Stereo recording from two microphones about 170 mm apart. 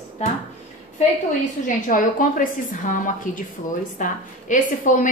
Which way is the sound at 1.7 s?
50° left (ahead or behind).